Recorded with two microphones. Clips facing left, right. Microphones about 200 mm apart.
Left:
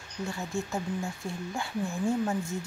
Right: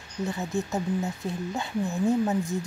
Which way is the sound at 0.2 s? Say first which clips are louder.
Right 4 dB; 20° right (ahead or behind).